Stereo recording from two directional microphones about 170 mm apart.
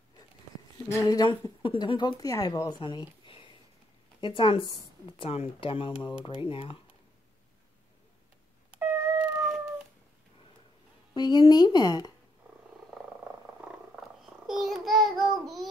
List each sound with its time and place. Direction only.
0.8 s speech: 20° left (ahead or behind)
8.7 s cat: 10° right (ahead or behind)
11.1 s speech: 25° left (ahead or behind)
13.9 s child singing: centre (ahead or behind)